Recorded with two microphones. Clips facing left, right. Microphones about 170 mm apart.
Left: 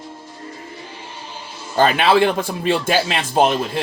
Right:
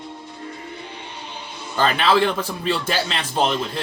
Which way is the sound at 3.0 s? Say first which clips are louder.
Left 5 dB; 50° left (ahead or behind).